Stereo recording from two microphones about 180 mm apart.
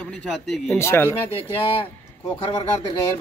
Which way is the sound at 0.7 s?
15° left (ahead or behind).